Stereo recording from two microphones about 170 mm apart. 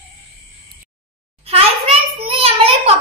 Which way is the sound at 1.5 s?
35° right (ahead or behind).